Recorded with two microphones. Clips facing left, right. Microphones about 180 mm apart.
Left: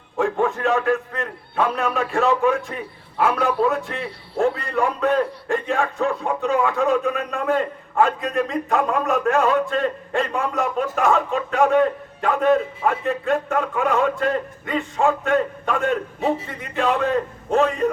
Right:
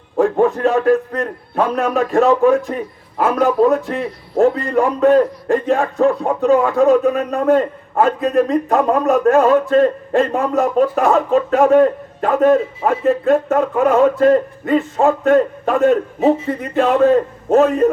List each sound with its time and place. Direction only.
0.2 s a man's voice: 35° right (ahead or behind)